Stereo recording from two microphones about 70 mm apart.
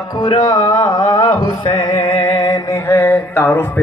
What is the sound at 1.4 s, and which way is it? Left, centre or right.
Mantra, left.